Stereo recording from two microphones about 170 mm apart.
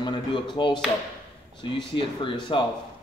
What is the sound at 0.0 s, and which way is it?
Speech, 25° left (ahead or behind).